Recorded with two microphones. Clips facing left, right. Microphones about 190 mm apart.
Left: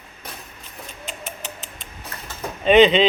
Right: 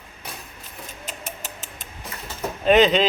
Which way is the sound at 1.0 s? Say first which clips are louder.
Left 3 dB; 45° right (ahead or behind).